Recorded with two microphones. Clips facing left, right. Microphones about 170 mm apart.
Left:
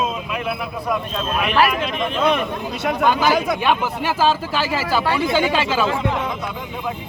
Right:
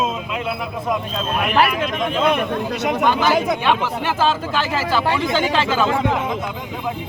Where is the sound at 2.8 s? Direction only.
20° right (ahead or behind).